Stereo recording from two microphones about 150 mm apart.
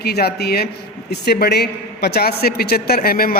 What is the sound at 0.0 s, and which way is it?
A man's voice, 90° left.